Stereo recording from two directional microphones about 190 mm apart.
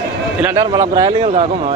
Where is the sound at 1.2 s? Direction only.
35° right (ahead or behind).